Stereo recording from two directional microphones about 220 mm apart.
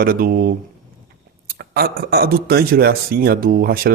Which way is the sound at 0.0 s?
40° right (ahead or behind).